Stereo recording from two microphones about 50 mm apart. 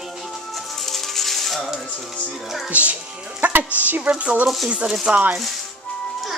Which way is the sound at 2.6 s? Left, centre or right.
Right.